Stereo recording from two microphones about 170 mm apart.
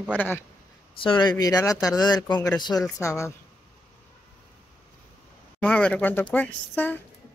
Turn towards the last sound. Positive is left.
turn(degrees=10)  # may be behind; listen again after turning